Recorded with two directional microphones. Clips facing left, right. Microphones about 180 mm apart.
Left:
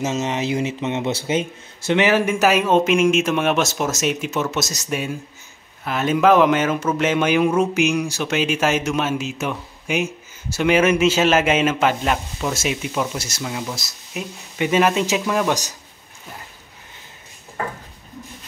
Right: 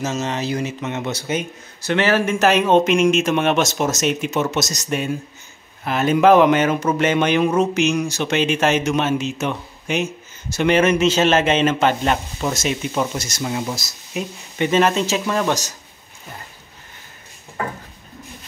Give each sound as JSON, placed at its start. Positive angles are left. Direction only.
{"t": 0.0, "sound": "speech", "side_deg": 20}
{"t": 13.4, "sound": "speech", "side_deg": -10}